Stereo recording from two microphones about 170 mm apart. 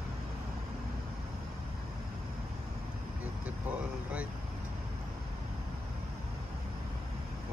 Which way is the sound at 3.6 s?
10° right (ahead or behind).